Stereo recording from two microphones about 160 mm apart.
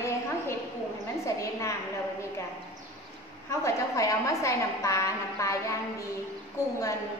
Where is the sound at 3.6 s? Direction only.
20° left (ahead or behind).